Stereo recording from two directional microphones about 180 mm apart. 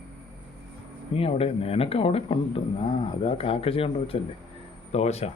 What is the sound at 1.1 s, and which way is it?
A man's voice, 30° left (ahead or behind).